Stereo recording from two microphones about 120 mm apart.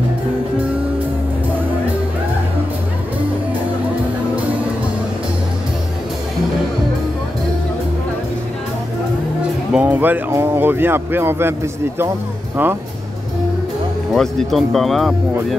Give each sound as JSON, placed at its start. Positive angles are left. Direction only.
{"t": 9.4, "sound": "speech", "side_deg": -10}
{"t": 14.1, "sound": "speech", "side_deg": 0}